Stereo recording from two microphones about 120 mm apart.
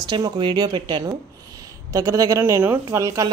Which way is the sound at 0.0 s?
35° right (ahead or behind).